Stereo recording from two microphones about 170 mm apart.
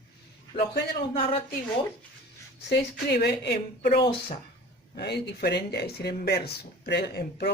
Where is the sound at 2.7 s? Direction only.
75° left (ahead or behind).